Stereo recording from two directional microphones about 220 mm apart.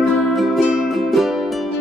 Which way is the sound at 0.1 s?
Centre (ahead or behind).